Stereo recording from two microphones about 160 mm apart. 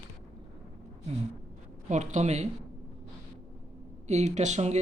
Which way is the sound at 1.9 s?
45° right (ahead or behind).